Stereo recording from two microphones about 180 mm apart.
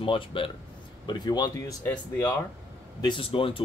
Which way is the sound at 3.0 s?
25° left (ahead or behind).